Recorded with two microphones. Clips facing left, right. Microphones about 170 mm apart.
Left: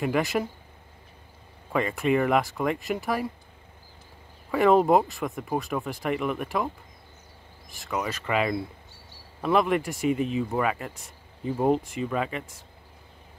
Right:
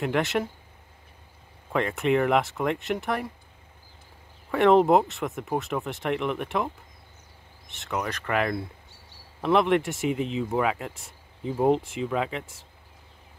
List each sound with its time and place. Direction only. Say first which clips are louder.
0.0 s speech: even; centre (ahead or behind)
1.7 s speech: even; centre (ahead or behind)
4.5 s speech: right 1 dB; centre (ahead or behind)
7.8 s speech: even; centre (ahead or behind)
10.0 s speech: left 2 dB; 90° right
10.5 s speech: right 1 dB; 5° right (ahead or behind)